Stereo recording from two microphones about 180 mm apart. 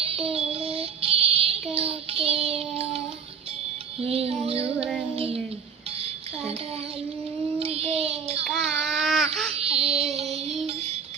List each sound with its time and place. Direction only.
0.0 s child singing: 35° right (ahead or behind)
4.0 s music: 35° right (ahead or behind)
5.1 s child singing: 35° right (ahead or behind)
6.0 s music: 35° right (ahead or behind)
7.6 s child singing: 35° right (ahead or behind)
8.4 s baby cry: centre (ahead or behind)
9.6 s child singing: 35° right (ahead or behind)